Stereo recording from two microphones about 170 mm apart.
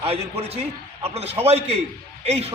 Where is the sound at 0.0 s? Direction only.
35° right (ahead or behind).